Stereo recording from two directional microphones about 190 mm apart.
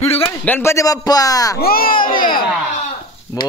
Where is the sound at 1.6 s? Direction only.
50° left (ahead or behind).